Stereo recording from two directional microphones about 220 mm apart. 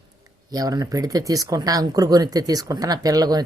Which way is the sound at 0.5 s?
15° right (ahead or behind).